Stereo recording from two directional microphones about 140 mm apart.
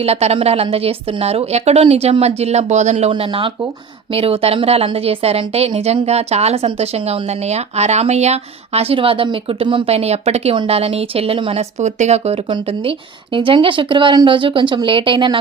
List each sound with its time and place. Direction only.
0.0 s a woman's voice: 50° right (ahead or behind)
3.1 s a woman's voice: 40° right (ahead or behind)
11.8 s a woman's voice: 55° right (ahead or behind)
12.5 s speech: 35° right (ahead or behind)